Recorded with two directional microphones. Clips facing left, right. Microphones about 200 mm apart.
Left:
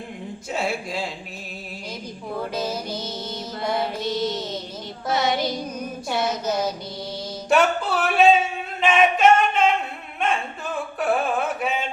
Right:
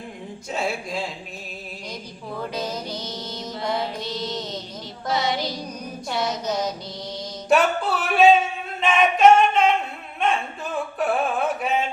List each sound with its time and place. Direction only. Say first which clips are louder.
0.5 s speech: even; centre (ahead or behind)
2.6 s music: left 2 dB; 5° left (ahead or behind)
5.1 s music: left 2 dB; 55° left (ahead or behind)
6.2 s music: left 1 dB; 5° left (ahead or behind)
7.5 s a sound: even; centre (ahead or behind)
8.8 s singing: right 1 dB; centre (ahead or behind)
10.9 s a sound: left 1 dB; centre (ahead or behind)